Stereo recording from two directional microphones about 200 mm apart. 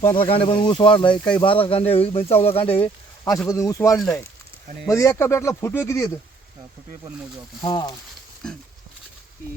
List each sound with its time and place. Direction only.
0.1 s speech: 25° left (ahead or behind)
3.5 s speech: 15° left (ahead or behind)
3.9 s speech: centre (ahead or behind)
4.9 s speech: 15° left (ahead or behind)
7.6 s speech: 20° left (ahead or behind)
8.4 s speech: 5° left (ahead or behind)